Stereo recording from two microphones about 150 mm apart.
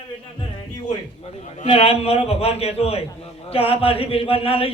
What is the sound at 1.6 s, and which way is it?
A man's voice, 35° left (ahead or behind).